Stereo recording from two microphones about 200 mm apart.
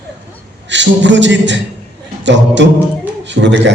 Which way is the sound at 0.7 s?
65° right (ahead or behind).